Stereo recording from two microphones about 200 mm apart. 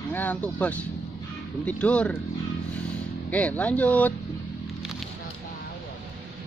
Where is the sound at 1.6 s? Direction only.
5° left (ahead or behind).